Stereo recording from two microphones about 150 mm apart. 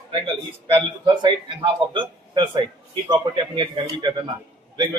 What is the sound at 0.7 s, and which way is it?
A man's voice, 30° right (ahead or behind).